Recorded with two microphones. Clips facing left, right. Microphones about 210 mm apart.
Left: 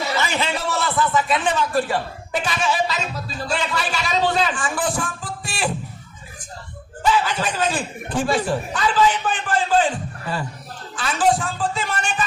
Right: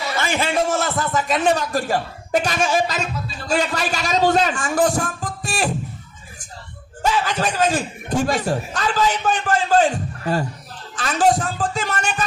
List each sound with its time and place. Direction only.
0.2 s a man's voice: 50° right (ahead or behind)
7.0 s a man's voice: 45° right (ahead or behind)